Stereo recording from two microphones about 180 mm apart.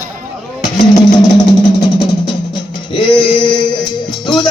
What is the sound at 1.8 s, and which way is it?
Music, 25° left (ahead or behind).